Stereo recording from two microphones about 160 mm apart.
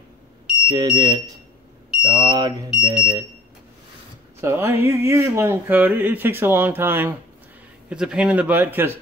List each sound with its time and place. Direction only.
0.7 s speech: 25° right (ahead or behind)
4.4 s speech: 15° right (ahead or behind)